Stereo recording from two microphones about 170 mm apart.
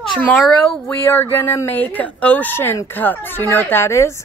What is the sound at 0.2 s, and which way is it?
Speech, 5° left (ahead or behind).